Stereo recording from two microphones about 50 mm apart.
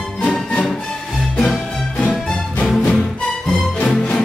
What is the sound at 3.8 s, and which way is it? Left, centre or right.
Music, left.